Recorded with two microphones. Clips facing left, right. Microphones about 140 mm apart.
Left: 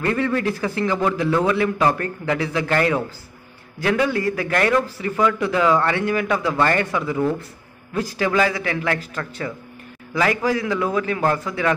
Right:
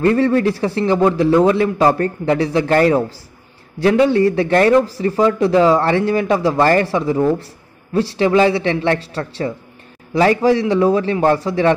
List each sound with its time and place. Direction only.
0.0 s a man's voice: 35° right (ahead or behind)